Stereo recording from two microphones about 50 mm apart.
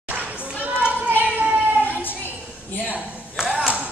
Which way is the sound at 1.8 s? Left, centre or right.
Left.